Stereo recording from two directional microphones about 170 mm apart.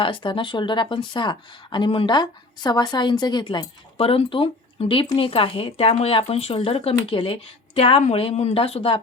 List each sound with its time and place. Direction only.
0.0 s speech: 30° left (ahead or behind)